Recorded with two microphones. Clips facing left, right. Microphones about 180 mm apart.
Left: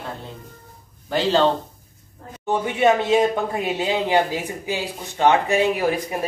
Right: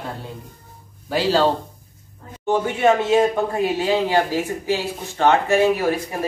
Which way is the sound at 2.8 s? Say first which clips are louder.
Even; 20° left (ahead or behind).